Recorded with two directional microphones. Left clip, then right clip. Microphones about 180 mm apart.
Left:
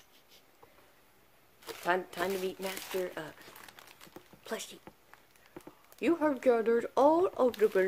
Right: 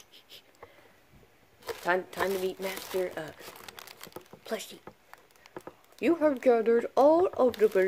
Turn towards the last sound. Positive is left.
turn(degrees=-10)  # may be behind; listen again after turning